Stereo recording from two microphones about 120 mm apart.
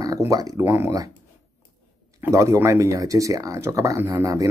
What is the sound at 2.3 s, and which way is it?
Speech, 25° right (ahead or behind).